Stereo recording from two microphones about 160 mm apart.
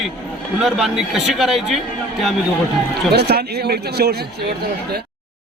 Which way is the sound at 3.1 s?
90° right.